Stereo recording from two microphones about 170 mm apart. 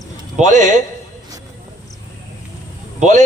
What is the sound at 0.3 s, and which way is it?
Speech, 45° right (ahead or behind).